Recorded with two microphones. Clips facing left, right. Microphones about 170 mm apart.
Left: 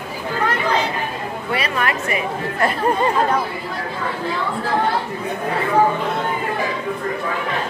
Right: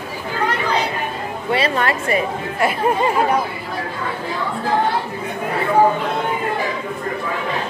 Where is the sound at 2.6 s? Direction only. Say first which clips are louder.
Right 1 dB; 10° right (ahead or behind).